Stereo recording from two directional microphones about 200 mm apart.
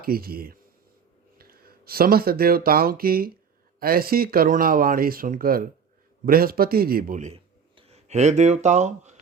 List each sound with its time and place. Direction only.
0.0 s a man's voice: 50° right (ahead or behind)